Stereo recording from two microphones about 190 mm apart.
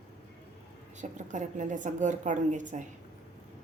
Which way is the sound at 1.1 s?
40° right (ahead or behind).